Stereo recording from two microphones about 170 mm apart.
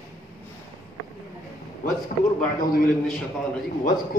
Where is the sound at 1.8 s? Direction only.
55° left (ahead or behind).